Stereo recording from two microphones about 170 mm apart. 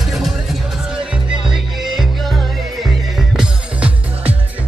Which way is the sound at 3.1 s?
5° right (ahead or behind).